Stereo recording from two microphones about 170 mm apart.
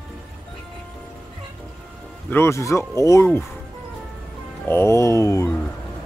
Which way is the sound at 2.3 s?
15° left (ahead or behind).